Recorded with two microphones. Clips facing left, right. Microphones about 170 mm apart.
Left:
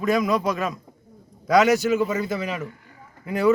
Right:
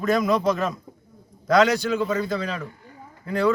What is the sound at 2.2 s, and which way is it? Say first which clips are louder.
A man's voice: even; 15° left (ahead or behind).